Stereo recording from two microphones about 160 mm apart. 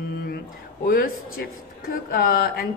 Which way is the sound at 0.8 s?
65° left (ahead or behind).